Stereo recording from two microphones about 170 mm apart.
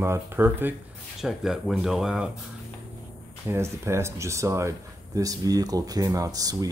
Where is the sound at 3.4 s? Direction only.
15° right (ahead or behind).